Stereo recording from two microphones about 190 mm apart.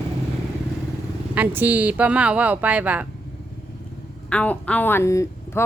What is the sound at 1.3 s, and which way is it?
Speech, 10° right (ahead or behind).